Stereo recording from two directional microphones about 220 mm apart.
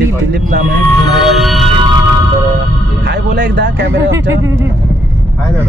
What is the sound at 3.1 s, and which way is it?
Speech, 50° right (ahead or behind).